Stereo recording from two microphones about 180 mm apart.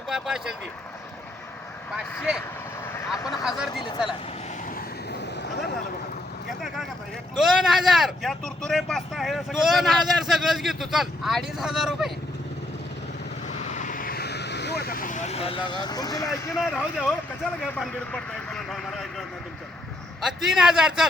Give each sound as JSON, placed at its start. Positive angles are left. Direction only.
{"t": 0.1, "sound": "speech", "side_deg": -5}
{"t": 2.1, "sound": "speech", "side_deg": 0}
{"t": 2.8, "sound": "vehicle", "side_deg": 15}
{"t": 3.4, "sound": "speech", "side_deg": 0}
{"t": 7.3, "sound": "speech", "side_deg": 0}
{"t": 13.5, "sound": "vehicle", "side_deg": 40}
{"t": 16.6, "sound": "speech", "side_deg": 0}
{"t": 20.2, "sound": "speech", "side_deg": 0}